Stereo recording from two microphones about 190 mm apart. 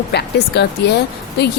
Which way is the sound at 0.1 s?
60° left (ahead or behind).